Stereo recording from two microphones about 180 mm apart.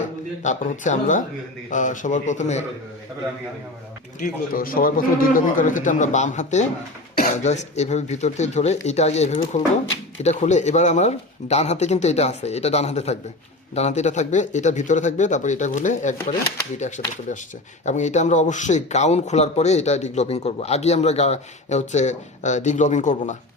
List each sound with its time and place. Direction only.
0.0 s a man's voice: 45° left (ahead or behind)
4.2 s speech: 50° left (ahead or behind)